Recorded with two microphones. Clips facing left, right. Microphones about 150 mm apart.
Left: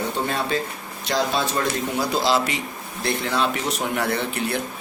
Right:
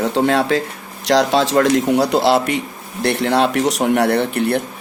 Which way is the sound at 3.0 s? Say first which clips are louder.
Right 7 dB; 70° right (ahead or behind).